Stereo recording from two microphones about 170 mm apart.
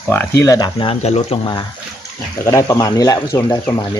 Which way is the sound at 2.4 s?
15° left (ahead or behind).